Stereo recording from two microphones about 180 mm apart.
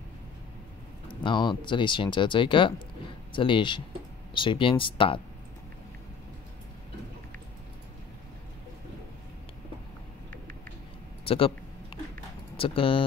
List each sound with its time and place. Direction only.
1.0 s speech: 25° left (ahead or behind)
11.2 s a sound: 30° left (ahead or behind)
12.5 s speech: 30° left (ahead or behind)